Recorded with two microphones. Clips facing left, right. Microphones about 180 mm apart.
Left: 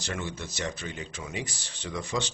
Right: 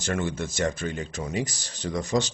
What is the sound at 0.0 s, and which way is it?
Speech, 50° right (ahead or behind).